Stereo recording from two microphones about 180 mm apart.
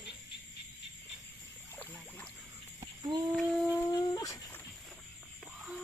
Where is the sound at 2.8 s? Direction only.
25° right (ahead or behind).